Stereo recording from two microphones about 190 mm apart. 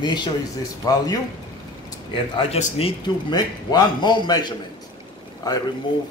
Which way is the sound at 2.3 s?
30° left (ahead or behind).